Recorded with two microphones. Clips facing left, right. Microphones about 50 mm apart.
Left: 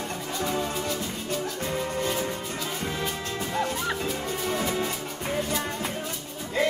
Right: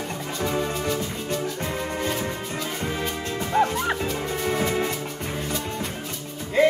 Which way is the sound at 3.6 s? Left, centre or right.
Right.